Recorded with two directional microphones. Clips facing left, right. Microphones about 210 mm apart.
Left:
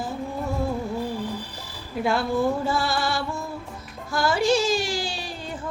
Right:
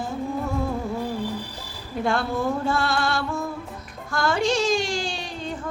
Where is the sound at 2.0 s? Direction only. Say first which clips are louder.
Left 2 dB; 5° left (ahead or behind).